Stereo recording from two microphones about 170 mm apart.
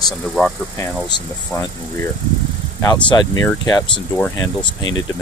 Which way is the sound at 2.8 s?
25° left (ahead or behind).